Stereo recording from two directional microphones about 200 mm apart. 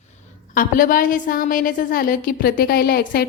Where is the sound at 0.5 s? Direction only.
45° left (ahead or behind).